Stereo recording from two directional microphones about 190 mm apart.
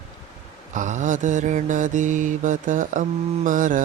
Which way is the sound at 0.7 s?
40° right (ahead or behind).